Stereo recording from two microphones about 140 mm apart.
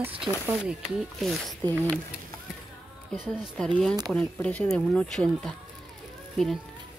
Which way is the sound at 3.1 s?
5° left (ahead or behind).